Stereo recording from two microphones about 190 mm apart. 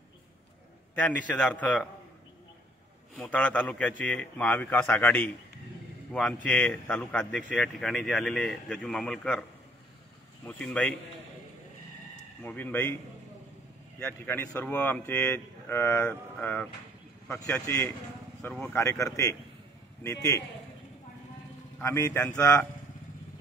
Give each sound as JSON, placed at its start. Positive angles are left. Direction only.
{"t": 0.9, "sound": "speech", "side_deg": 5}
{"t": 3.2, "sound": "speech", "side_deg": 5}
{"t": 10.4, "sound": "speech", "side_deg": 5}
{"t": 12.4, "sound": "speech", "side_deg": 10}
{"t": 13.9, "sound": "speech", "side_deg": 10}
{"t": 21.7, "sound": "speech", "side_deg": 15}